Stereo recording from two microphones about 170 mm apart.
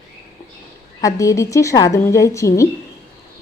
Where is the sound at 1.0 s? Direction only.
20° left (ahead or behind).